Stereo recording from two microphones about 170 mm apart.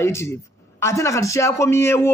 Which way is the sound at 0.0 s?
15° left (ahead or behind).